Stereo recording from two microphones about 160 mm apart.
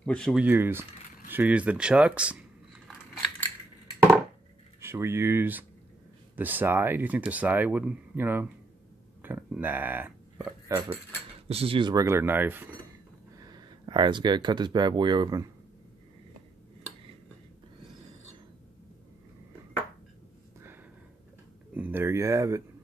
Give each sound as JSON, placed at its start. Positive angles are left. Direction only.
{"t": 0.0, "sound": "speech", "side_deg": 5}
{"t": 0.4, "sound": "speech", "side_deg": -10}
{"t": 4.7, "sound": "speech", "side_deg": -15}
{"t": 9.2, "sound": "a sound", "side_deg": -10}
{"t": 10.7, "sound": "speech", "side_deg": -20}
{"t": 11.4, "sound": "speech", "side_deg": -35}
{"t": 13.4, "sound": "speech", "side_deg": -25}
{"t": 21.7, "sound": "speech", "side_deg": -10}